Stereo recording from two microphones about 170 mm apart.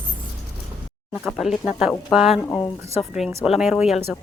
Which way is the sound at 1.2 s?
Centre (ahead or behind).